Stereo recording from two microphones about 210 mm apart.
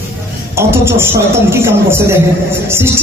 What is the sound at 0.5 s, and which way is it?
A woman's voice, 10° right (ahead or behind).